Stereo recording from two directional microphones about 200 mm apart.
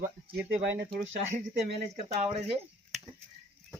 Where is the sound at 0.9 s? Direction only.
30° right (ahead or behind).